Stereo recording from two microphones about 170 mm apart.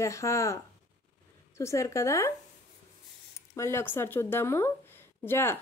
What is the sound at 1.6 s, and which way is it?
Speech, 20° left (ahead or behind).